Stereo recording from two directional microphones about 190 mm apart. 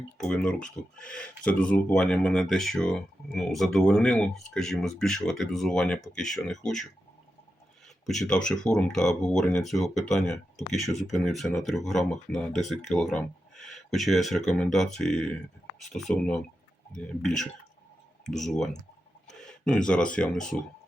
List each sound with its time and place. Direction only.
0.2 s speech: 5° left (ahead or behind)
8.0 s speech: centre (ahead or behind)